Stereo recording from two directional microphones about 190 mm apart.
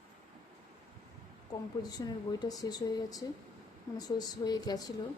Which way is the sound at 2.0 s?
20° left (ahead or behind).